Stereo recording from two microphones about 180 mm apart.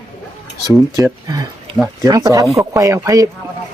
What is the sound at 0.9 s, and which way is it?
Speech, 15° right (ahead or behind).